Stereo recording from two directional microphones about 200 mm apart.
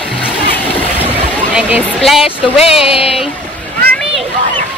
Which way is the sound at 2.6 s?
30° left (ahead or behind).